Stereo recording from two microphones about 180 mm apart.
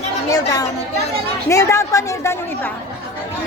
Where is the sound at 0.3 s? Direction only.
20° left (ahead or behind).